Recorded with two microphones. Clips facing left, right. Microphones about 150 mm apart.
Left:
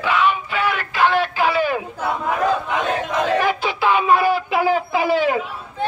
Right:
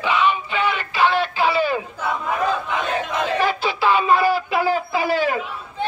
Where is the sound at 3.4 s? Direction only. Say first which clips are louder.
Even; 15° left (ahead or behind).